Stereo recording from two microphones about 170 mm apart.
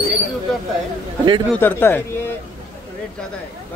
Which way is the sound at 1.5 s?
10° left (ahead or behind).